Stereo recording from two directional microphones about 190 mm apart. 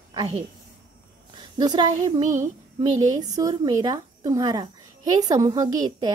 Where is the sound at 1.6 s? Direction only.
20° right (ahead or behind).